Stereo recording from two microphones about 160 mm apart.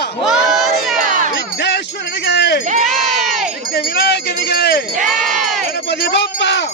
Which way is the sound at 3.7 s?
90° left.